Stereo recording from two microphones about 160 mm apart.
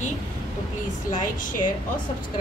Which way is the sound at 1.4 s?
55° left (ahead or behind).